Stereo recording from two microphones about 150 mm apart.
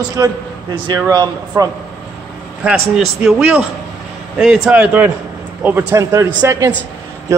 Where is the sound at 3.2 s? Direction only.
10° right (ahead or behind).